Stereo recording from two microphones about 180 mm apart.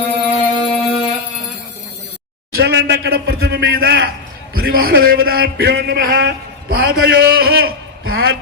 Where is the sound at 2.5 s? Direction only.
70° right (ahead or behind).